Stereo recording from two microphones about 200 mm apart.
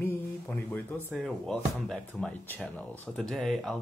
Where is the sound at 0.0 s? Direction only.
10° left (ahead or behind).